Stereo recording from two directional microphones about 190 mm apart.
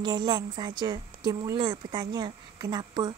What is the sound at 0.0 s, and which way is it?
A woman's voice, 20° right (ahead or behind).